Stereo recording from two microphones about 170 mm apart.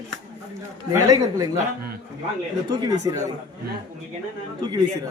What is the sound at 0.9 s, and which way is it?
Speech, 20° right (ahead or behind).